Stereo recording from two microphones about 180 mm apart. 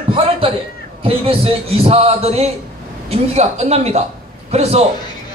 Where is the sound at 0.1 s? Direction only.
30° right (ahead or behind).